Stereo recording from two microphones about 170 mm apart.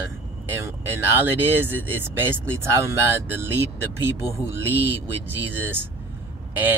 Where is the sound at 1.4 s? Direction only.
10° right (ahead or behind).